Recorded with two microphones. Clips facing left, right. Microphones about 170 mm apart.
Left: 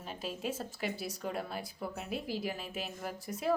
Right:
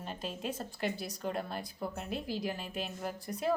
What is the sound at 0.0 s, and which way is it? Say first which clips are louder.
Speech: even; 5° left (ahead or behind).